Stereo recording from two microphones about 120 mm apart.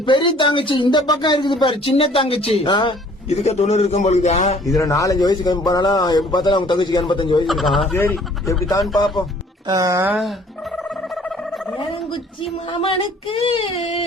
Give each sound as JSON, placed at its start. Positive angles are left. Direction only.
{"t": 0.0, "sound": "speech", "side_deg": 45}
{"t": 2.6, "sound": "speech", "side_deg": 40}
{"t": 3.2, "sound": "a man's voice", "side_deg": 65}
{"t": 4.8, "sound": "speech", "side_deg": 25}
{"t": 7.4, "sound": "a man's voice", "side_deg": 0}
{"t": 7.9, "sound": "speech", "side_deg": 15}
{"t": 9.6, "sound": "speech", "side_deg": -30}
{"t": 10.8, "sound": "a sound", "side_deg": 0}
{"t": 12.7, "sound": "speech", "side_deg": 45}